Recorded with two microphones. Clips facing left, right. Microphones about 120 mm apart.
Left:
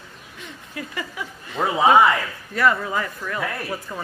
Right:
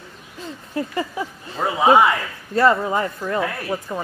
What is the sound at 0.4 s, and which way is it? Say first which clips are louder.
Speech: right 8 dB; 30° right (ahead or behind).